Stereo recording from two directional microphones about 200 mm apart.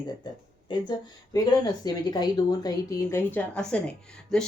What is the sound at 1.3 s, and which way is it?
A woman's voice, 20° left (ahead or behind).